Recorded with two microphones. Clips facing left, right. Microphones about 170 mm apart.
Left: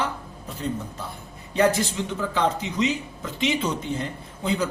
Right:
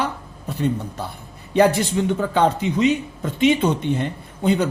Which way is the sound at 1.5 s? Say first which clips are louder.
Right 5 dB; 70° right (ahead or behind).